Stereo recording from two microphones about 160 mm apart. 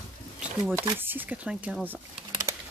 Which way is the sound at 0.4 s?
10° right (ahead or behind).